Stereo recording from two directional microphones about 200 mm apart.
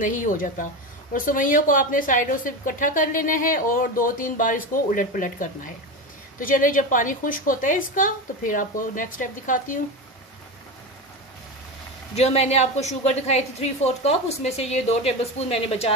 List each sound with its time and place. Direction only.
0.0 s a woman's voice: 40° left (ahead or behind)
12.2 s a woman's voice: 30° left (ahead or behind)